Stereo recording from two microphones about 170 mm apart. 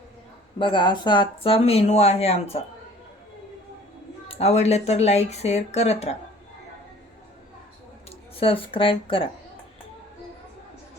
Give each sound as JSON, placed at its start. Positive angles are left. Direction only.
{"t": 0.6, "sound": "speech", "side_deg": 30}
{"t": 4.3, "sound": "speech", "side_deg": 35}
{"t": 8.4, "sound": "speech", "side_deg": 30}